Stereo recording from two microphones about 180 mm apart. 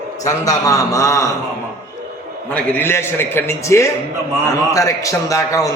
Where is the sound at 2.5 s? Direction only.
10° left (ahead or behind).